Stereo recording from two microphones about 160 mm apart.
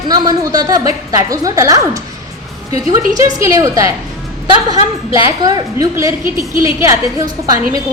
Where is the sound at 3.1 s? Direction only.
20° right (ahead or behind).